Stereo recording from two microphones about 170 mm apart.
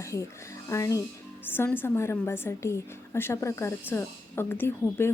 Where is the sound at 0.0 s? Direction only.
20° left (ahead or behind).